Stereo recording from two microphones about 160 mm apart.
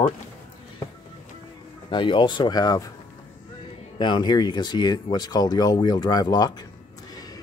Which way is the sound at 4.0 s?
30° left (ahead or behind).